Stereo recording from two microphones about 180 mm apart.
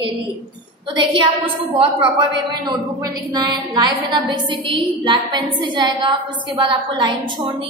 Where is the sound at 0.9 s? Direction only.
25° right (ahead or behind).